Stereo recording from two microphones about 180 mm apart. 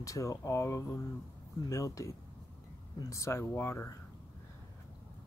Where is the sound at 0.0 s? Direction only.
20° left (ahead or behind).